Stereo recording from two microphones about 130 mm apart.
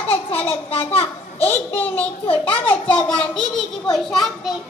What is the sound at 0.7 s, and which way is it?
A child's voice, 45° left (ahead or behind).